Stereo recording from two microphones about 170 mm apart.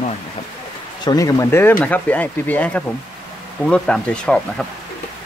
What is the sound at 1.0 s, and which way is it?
Speech, 20° left (ahead or behind).